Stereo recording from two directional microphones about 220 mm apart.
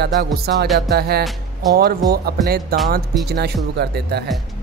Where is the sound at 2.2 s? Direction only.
45° right (ahead or behind).